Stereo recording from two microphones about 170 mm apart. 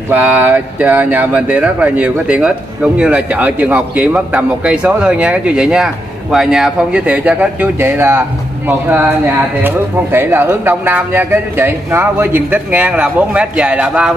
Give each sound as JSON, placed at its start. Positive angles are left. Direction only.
{"t": 0.1, "sound": "speech", "side_deg": -10}